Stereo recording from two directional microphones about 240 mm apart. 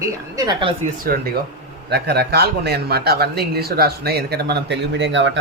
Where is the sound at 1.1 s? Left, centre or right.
Right.